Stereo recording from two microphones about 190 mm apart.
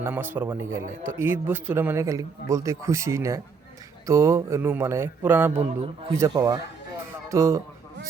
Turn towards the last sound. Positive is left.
turn(degrees=-15)  # may be behind; listen again after turning